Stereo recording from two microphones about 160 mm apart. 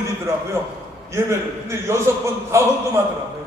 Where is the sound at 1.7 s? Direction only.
15° right (ahead or behind).